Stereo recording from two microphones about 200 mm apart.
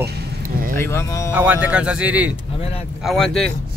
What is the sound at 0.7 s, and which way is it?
Speech, 15° left (ahead or behind).